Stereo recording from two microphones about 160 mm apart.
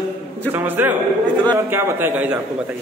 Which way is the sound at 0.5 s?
10° right (ahead or behind).